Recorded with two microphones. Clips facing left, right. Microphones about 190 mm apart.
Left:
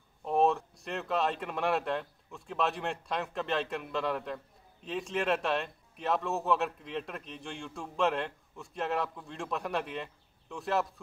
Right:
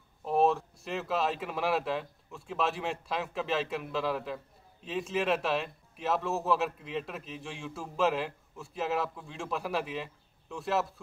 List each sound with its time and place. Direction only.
0.2 s a man's voice: centre (ahead or behind)